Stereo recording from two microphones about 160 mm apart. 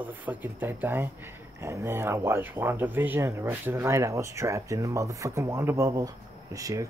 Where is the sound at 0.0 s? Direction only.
10° right (ahead or behind).